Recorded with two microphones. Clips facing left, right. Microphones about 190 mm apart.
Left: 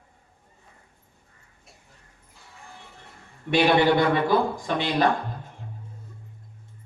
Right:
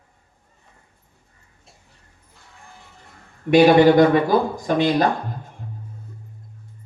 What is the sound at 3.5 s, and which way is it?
Speech, 40° right (ahead or behind).